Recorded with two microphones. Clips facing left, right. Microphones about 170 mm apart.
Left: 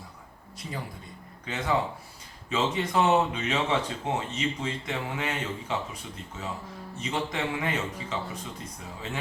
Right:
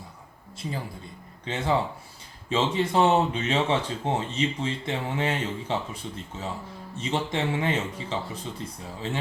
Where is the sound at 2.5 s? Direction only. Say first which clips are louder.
Right 3 dB; 30° right (ahead or behind).